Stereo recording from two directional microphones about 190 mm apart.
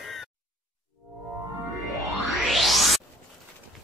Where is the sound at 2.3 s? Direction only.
Centre (ahead or behind).